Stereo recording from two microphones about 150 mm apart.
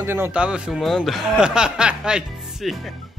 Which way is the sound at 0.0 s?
15° right (ahead or behind).